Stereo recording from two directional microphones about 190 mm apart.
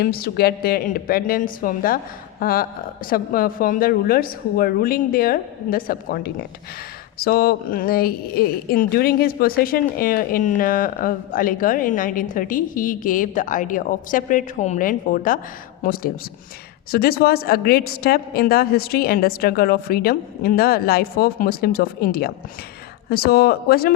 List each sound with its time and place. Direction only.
0.0 s speech: 50° left (ahead or behind)